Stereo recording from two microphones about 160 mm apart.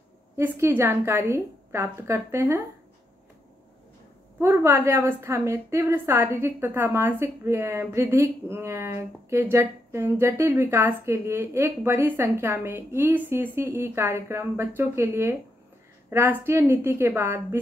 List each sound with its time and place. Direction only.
0.4 s a woman's voice: 15° right (ahead or behind)
4.4 s a woman's voice: 15° right (ahead or behind)